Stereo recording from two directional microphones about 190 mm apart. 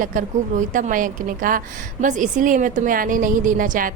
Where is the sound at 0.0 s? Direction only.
45° right (ahead or behind).